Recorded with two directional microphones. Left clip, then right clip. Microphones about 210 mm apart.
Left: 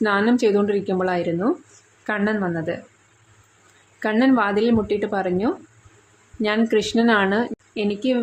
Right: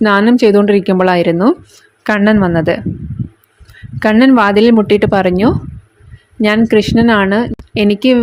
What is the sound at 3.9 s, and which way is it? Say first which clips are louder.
A woman's voice: right 10 dB; 35° right (ahead or behind).